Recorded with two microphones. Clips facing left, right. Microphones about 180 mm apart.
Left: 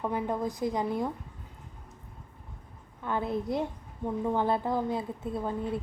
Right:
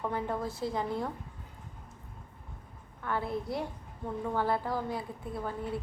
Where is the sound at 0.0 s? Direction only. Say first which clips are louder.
Left 3 dB; 15° left (ahead or behind).